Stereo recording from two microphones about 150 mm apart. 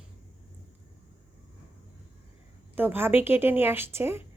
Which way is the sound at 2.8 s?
15° right (ahead or behind).